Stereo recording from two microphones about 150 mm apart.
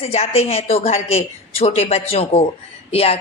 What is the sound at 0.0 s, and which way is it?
Speech, 45° left (ahead or behind).